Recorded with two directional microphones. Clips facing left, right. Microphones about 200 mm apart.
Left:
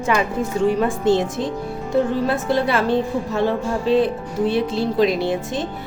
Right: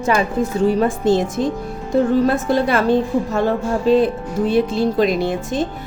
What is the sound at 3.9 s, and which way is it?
A woman's voice, 45° right (ahead or behind).